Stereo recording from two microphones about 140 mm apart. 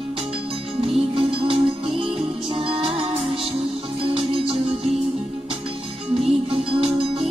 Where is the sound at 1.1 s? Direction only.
35° right (ahead or behind).